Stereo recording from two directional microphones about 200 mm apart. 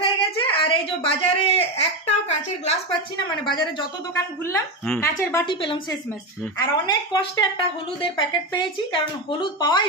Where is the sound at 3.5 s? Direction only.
20° left (ahead or behind).